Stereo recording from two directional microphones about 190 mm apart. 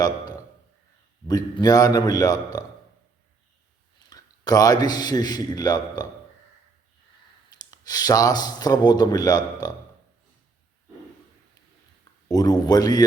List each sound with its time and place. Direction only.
1.3 s a man's voice: 20° left (ahead or behind)
4.1 s a man's voice: 20° left (ahead or behind)
7.7 s a man's voice: 20° left (ahead or behind)
12.3 s a man's voice: 20° left (ahead or behind)